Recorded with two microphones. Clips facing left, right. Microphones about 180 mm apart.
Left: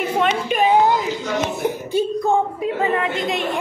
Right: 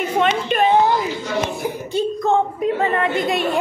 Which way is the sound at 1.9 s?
10° left (ahead or behind).